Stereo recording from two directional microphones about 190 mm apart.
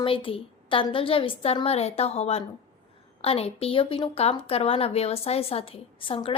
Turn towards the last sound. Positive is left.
turn(degrees=30)  # may be behind; listen again after turning